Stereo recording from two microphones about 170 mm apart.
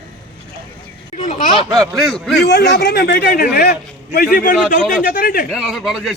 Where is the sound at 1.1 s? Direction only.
45° left (ahead or behind).